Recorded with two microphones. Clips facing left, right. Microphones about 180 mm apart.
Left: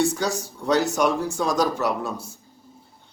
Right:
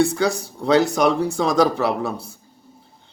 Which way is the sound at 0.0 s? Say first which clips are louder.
Right 4 dB; 55° right (ahead or behind).